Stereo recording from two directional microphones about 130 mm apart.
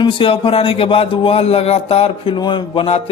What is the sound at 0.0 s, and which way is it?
Speech, 40° left (ahead or behind).